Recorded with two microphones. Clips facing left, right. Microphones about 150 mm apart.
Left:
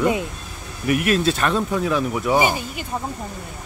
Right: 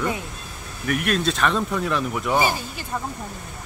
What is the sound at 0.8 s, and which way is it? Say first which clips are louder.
Speech: left 4 dB; 5° left (ahead or behind).